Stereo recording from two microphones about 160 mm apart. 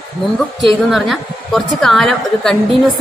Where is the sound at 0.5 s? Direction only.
Centre (ahead or behind).